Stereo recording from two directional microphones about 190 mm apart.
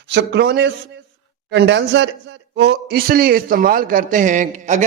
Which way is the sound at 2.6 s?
55° right (ahead or behind).